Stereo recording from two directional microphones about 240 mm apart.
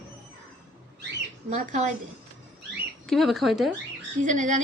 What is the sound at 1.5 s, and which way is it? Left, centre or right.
Speech, right.